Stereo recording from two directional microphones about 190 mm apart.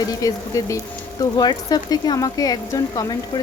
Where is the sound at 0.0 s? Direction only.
20° left (ahead or behind).